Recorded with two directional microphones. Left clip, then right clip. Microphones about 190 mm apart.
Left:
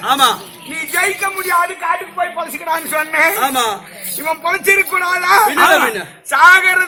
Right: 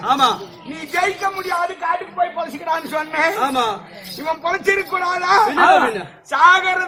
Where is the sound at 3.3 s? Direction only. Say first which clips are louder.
Left 3 dB; 10° left (ahead or behind).